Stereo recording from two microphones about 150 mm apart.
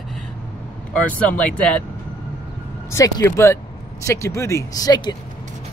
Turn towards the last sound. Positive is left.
turn(degrees=25)  # may be behind; listen again after turning